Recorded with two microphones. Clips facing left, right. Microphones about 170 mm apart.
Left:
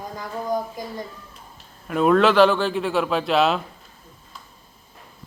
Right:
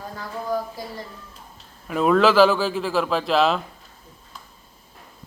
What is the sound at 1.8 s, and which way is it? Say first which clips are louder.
A man's voice: left 1 dB; centre (ahead or behind).